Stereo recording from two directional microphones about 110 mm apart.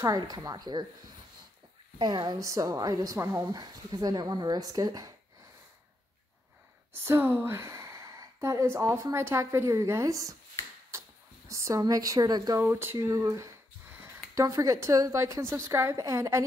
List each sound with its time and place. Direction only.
0.0 s a woman's voice: 30° right (ahead or behind)
2.0 s a woman's voice: 40° right (ahead or behind)
6.9 s a woman's voice: 20° right (ahead or behind); by 12.5 s 40° right (ahead or behind)
12.5 s a woman's voice: 20° right (ahead or behind)
13.0 s a woman's voice: 30° right (ahead or behind)
13.9 s a sound: 20° right (ahead or behind)
14.3 s a woman's voice: 30° right (ahead or behind)